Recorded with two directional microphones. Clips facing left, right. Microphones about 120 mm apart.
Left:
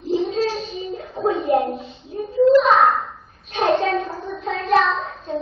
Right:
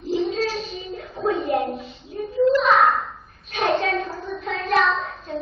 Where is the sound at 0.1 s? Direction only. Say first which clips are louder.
Left 2 dB; 25° left (ahead or behind).